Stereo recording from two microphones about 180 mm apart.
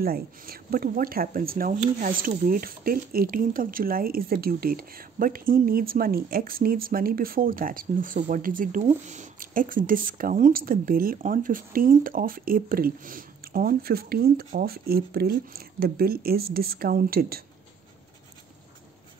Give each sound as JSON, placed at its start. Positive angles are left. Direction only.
{"t": 0.0, "sound": "speech", "side_deg": -55}